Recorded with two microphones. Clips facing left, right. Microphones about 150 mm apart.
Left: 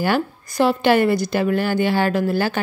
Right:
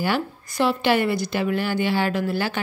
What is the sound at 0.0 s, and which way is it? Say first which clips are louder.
A woman's voice: left 4 dB; 45° left (ahead or behind).